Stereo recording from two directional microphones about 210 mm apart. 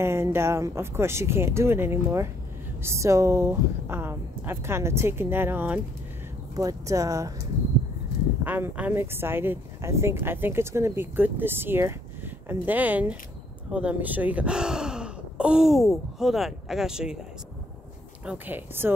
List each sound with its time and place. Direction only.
0.0 s speech: 10° right (ahead or behind)
8.5 s speech: 10° right (ahead or behind)
18.2 s speech: 5° right (ahead or behind)